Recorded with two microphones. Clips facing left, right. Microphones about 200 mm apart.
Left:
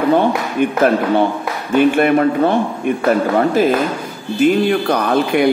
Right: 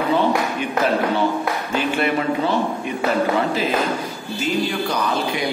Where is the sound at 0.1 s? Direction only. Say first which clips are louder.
Left 4 dB; 55° left (ahead or behind).